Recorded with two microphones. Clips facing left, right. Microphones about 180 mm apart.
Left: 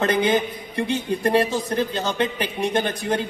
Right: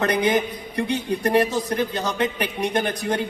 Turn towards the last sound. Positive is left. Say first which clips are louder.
# left 1 dB
turn(degrees=25)  # may be behind; listen again after turning